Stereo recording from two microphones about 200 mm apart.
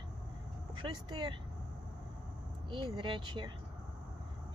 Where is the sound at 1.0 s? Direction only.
20° right (ahead or behind).